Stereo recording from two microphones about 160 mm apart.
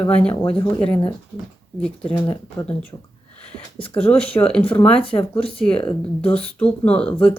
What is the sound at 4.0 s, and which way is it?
Speech, 10° left (ahead or behind).